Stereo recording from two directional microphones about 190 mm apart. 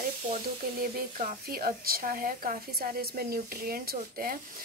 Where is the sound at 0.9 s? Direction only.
45° right (ahead or behind).